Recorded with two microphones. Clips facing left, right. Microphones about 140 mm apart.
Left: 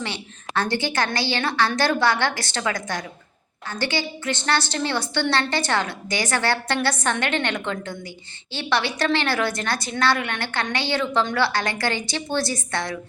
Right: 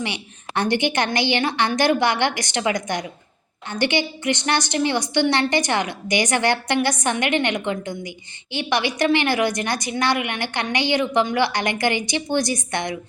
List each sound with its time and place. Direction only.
0.0 s a woman's voice: 15° right (ahead or behind)